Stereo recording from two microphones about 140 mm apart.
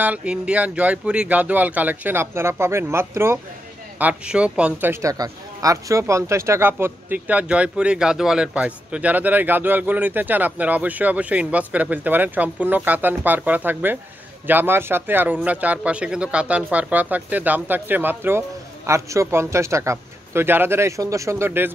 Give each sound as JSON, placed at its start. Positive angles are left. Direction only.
{"t": 0.0, "sound": "speech", "side_deg": -10}
{"t": 5.1, "sound": "a man's voice", "side_deg": -25}